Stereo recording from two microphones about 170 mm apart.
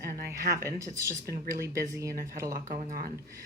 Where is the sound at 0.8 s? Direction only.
20° right (ahead or behind).